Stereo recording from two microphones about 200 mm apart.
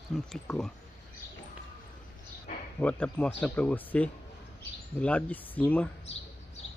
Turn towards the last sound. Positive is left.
turn(degrees=10)  # may be behind; listen again after turning